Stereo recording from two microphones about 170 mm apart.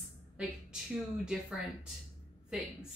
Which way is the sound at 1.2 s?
5° right (ahead or behind).